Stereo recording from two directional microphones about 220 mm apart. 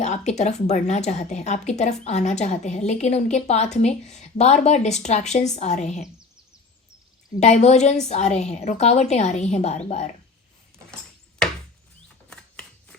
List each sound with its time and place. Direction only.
0.0 s a woman's voice: 30° left (ahead or behind)
7.3 s a woman's voice: 30° left (ahead or behind)
12.0 s a sound: 5° left (ahead or behind)